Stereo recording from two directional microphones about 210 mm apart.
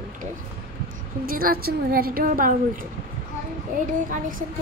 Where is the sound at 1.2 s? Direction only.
45° right (ahead or behind).